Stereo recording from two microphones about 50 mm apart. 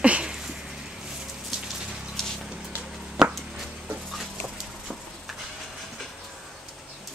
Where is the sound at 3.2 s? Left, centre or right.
Centre.